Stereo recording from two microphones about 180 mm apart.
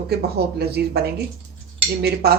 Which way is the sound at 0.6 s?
60° right (ahead or behind).